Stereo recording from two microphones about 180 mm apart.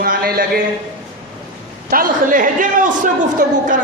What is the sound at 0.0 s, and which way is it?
Speech, 55° right (ahead or behind).